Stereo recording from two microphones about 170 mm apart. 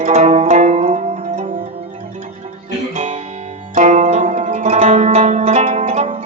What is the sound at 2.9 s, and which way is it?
Guitar, 40° right (ahead or behind).